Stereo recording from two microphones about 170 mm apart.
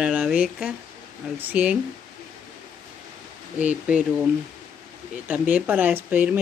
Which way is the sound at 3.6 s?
10° right (ahead or behind).